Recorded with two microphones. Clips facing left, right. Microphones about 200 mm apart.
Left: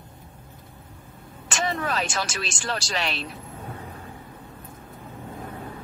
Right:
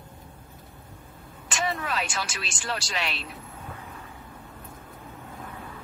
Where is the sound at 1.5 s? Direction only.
40° left (ahead or behind).